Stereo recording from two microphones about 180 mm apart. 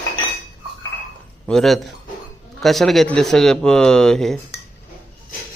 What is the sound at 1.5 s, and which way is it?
Speech, centre (ahead or behind).